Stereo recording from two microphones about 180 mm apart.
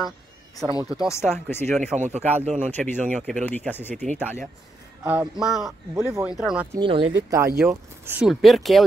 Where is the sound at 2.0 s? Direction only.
40° right (ahead or behind).